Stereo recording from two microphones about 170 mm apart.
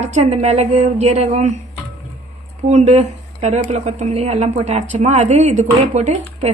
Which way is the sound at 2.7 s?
45° right (ahead or behind).